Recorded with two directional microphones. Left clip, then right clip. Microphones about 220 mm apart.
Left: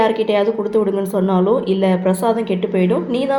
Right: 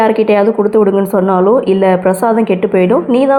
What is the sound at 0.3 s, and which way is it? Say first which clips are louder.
A woman's voice: right 7 dB; 25° right (ahead or behind).